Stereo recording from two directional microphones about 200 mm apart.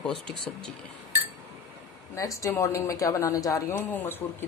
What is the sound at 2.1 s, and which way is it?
Speech, 15° left (ahead or behind).